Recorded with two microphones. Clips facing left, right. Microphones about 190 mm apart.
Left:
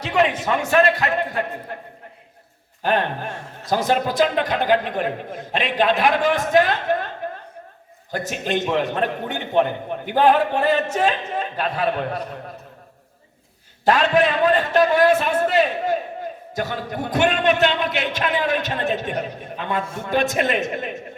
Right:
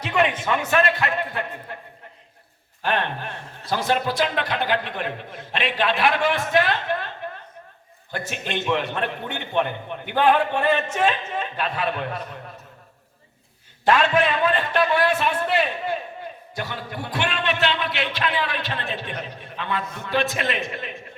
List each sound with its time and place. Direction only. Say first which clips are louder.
0.0 s a man's voice: left 2 dB; 30° left (ahead or behind); by 7.1 s 45° left (ahead or behind)
8.1 s a man's voice: left 5 dB; 40° left (ahead or behind)
13.8 s a man's voice: left 2 dB; 40° left (ahead or behind)